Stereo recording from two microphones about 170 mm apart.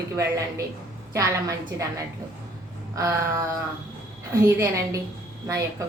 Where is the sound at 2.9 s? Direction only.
15° right (ahead or behind).